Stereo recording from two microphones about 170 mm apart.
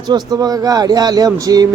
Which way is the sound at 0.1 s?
20° right (ahead or behind).